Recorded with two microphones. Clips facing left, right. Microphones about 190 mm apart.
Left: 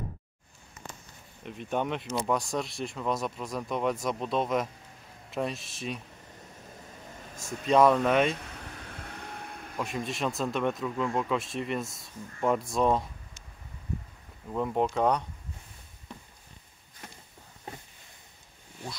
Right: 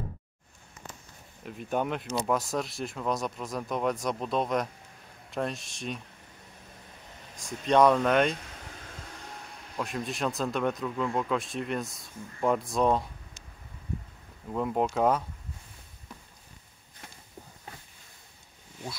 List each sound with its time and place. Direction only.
1.4 s speech: 5° right (ahead or behind)
7.3 s speech: centre (ahead or behind)
9.2 s vehicle: 55° left (ahead or behind)
9.8 s speech: centre (ahead or behind)
14.5 s speech: centre (ahead or behind)